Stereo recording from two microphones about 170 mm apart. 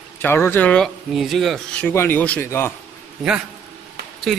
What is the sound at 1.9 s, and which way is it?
Speech, 15° left (ahead or behind).